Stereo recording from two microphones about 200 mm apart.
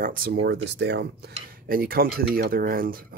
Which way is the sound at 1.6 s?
45° right (ahead or behind).